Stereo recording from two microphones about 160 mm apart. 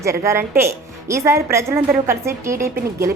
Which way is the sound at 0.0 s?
20° right (ahead or behind).